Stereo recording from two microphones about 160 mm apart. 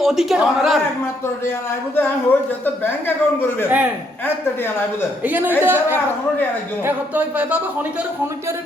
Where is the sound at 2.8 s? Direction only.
15° left (ahead or behind).